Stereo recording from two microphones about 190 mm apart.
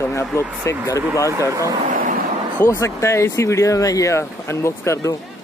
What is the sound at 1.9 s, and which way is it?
Vehicle, 45° right (ahead or behind).